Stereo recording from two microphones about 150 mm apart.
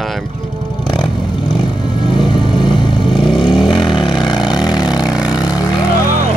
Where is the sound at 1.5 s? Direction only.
35° left (ahead or behind).